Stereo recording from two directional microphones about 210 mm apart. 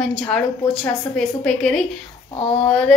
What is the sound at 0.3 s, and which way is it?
A woman's voice, 5° left (ahead or behind).